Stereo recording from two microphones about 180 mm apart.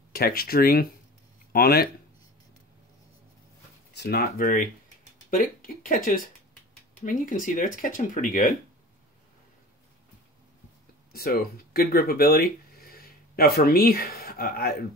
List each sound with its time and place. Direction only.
0.1 s speech: 55° left (ahead or behind)
3.9 s speech: 65° left (ahead or behind); by 8.5 s 50° left (ahead or behind)
11.1 s speech: 55° left (ahead or behind)